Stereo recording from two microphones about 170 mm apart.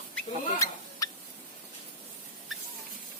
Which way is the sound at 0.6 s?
20° left (ahead or behind).